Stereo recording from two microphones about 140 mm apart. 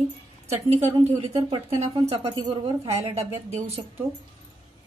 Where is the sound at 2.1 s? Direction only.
45° right (ahead or behind).